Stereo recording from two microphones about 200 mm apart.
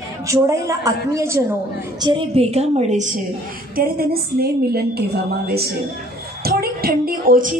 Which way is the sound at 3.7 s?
50° right (ahead or behind).